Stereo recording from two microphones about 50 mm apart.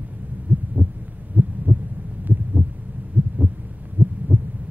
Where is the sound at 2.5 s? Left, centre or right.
Right.